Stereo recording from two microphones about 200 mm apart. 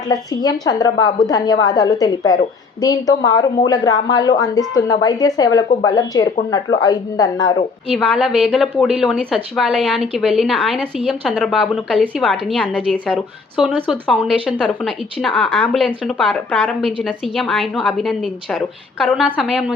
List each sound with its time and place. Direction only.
0.1 s a woman's voice: 20° left (ahead or behind)
7.9 s a woman's voice: centre (ahead or behind)